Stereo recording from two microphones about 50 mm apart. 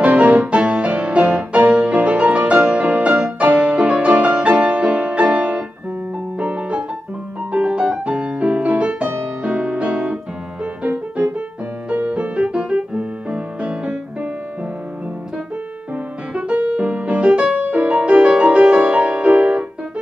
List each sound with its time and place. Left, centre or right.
0.0 s music: right
16.3 s music: right